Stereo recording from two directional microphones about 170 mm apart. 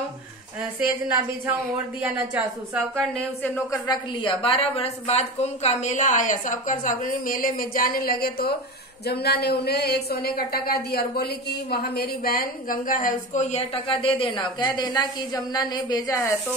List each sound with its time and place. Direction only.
2.3 s a woman's voice: 5° right (ahead or behind)
3.5 s a woman's voice: 20° left (ahead or behind)